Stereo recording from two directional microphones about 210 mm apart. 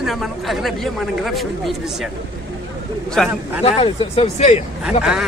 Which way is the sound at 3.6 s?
30° left (ahead or behind).